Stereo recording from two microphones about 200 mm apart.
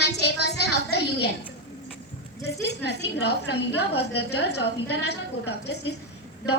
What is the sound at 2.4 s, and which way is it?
A woman's voice, 55° left (ahead or behind).